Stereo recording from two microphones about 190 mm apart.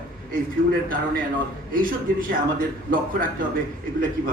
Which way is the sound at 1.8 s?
50° right (ahead or behind).